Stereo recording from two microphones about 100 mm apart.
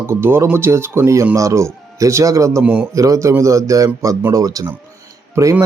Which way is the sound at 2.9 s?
35° right (ahead or behind).